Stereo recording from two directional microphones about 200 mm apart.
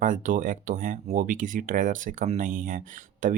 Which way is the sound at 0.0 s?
40° right (ahead or behind).